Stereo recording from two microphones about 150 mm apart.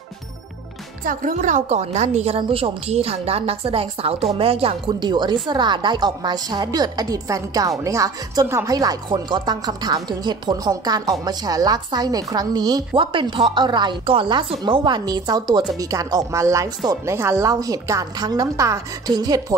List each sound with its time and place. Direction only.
1.0 s a woman's voice: 55° right (ahead or behind); by 19.4 s 25° right (ahead or behind)